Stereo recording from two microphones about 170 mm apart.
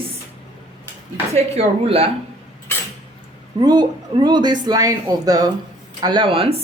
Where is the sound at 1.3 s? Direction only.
35° right (ahead or behind).